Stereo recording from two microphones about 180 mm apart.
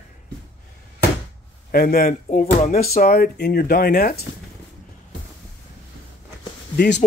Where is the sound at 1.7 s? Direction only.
55° left (ahead or behind).